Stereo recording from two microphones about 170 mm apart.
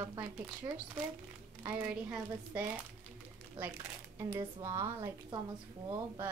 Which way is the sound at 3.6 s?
10° right (ahead or behind).